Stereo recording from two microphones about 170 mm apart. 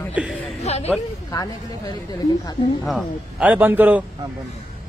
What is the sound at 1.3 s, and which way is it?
Speech, 25° left (ahead or behind).